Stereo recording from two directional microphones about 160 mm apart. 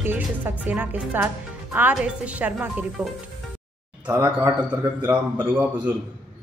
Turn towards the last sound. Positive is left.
turn(degrees=-10)  # may be behind; listen again after turning